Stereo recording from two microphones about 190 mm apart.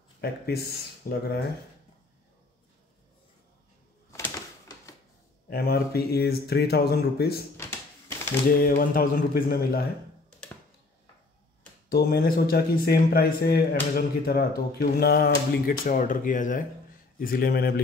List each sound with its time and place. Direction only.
0.2 s speech: 55° left (ahead or behind)
4.1 s a sound: 15° left (ahead or behind)
5.5 s speech: 55° left (ahead or behind)
7.5 s a sound: 15° left (ahead or behind)
8.5 s speech: 50° left (ahead or behind)
11.9 s speech: 55° left (ahead or behind)